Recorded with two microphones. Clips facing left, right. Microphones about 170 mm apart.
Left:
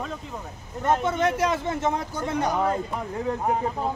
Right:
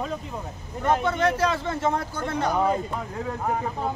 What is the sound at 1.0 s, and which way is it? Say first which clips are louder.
Speech: even; 20° left (ahead or behind).